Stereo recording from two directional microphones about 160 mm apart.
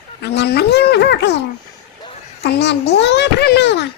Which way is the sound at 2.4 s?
90° left.